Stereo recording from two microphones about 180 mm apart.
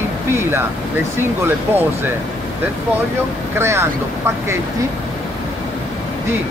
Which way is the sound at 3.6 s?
15° right (ahead or behind).